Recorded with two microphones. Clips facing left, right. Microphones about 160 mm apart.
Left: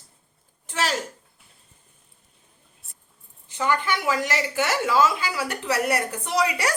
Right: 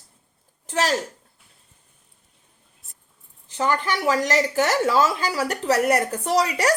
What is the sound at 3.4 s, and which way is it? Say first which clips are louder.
A woman's voice: right 1 dB; 35° right (ahead or behind).